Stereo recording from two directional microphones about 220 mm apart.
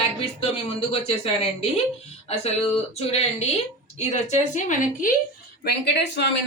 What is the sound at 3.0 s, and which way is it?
A woman's voice, 30° left (ahead or behind).